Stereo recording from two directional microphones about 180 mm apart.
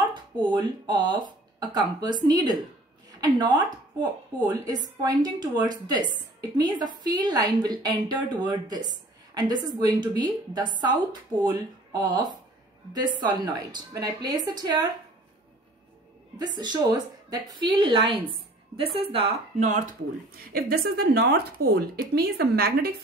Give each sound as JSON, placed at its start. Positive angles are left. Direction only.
{"t": 0.1, "sound": "a woman's voice", "side_deg": -25}
{"t": 16.3, "sound": "a woman's voice", "side_deg": -25}
{"t": 20.5, "sound": "speech", "side_deg": -55}